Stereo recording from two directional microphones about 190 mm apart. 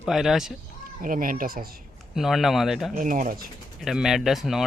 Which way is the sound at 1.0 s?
45° right (ahead or behind).